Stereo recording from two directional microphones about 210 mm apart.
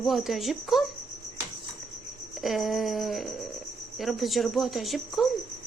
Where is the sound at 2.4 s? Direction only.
Centre (ahead or behind).